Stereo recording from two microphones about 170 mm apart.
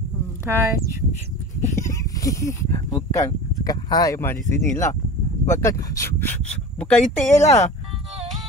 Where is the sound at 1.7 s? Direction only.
20° left (ahead or behind).